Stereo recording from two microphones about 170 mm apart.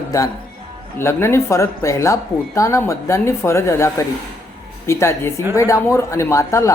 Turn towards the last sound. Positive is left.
turn(degrees=15)  # may be behind; listen again after turning